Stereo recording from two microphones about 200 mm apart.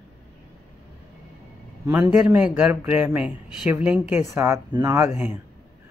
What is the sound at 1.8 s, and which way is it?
Speech, 10° right (ahead or behind).